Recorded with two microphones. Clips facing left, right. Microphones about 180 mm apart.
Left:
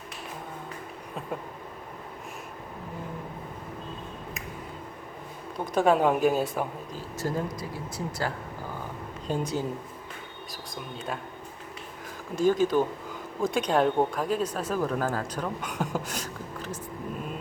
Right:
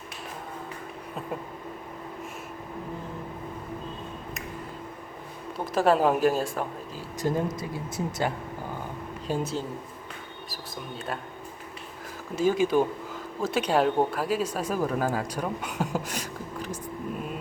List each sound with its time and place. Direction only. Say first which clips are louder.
5.5 s a woman's voice: even; centre (ahead or behind)
7.2 s speech: right 3 dB; 20° right (ahead or behind)
9.2 s speech: even; 5° right (ahead or behind)
12.4 s speech: even; 10° right (ahead or behind)